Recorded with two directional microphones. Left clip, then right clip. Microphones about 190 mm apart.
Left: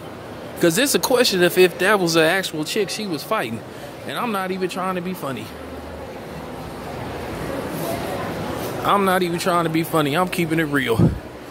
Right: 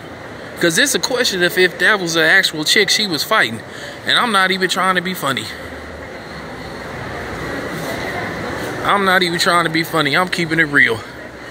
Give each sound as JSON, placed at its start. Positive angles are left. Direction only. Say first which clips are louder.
{"t": 0.6, "sound": "speech", "louder": "right 3 dB", "side_deg": 20}
{"t": 2.6, "sound": "speech", "louder": "right 10 dB", "side_deg": 5}
{"t": 8.8, "sound": "speech", "louder": "right 4 dB", "side_deg": 15}